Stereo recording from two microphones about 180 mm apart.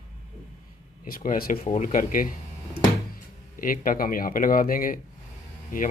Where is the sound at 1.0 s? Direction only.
50° left (ahead or behind).